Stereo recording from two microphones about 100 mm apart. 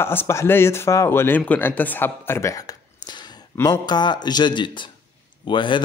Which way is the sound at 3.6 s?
45° left (ahead or behind).